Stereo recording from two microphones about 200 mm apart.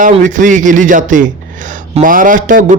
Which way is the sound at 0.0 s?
40° right (ahead or behind).